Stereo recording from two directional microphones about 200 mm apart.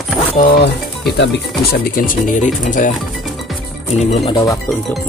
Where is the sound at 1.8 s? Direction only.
45° left (ahead or behind).